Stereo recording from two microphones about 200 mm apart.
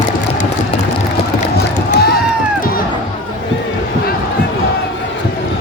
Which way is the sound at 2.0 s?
50° left (ahead or behind).